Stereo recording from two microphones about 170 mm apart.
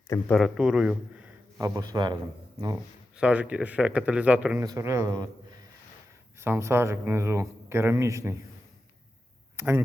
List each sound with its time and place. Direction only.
0.3 s a man's voice: centre (ahead or behind)
1.6 s a man's voice: 20° right (ahead or behind)
3.2 s a man's voice: 5° right (ahead or behind)
9.6 s speech: 15° right (ahead or behind)